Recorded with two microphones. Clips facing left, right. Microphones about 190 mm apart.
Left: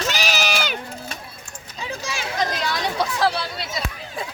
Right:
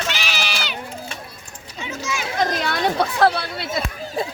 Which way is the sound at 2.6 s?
55° right (ahead or behind).